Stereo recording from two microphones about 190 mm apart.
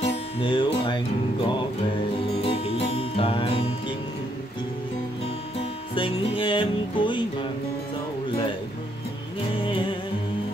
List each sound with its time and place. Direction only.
0.0 s music: 25° left (ahead or behind)
2.4 s music: 30° left (ahead or behind)
5.6 s music: 25° left (ahead or behind)
9.5 s music: 25° left (ahead or behind)